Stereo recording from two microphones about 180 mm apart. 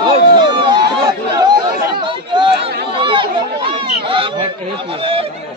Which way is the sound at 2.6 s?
65° right (ahead or behind).